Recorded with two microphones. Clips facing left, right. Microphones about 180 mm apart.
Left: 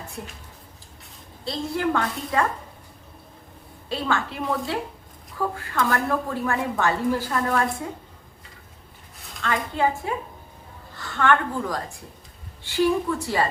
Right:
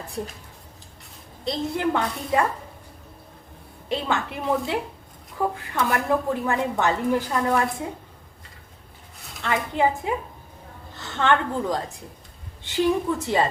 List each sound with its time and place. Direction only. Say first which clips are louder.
1.5 s a woman's voice: right 1 dB; 20° right (ahead or behind)
3.8 s a woman's voice: even; 20° right (ahead or behind)
9.4 s a woman's voice: right 1 dB; 20° right (ahead or behind)